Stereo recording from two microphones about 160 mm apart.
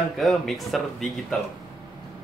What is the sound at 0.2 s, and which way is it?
Speech, centre (ahead or behind).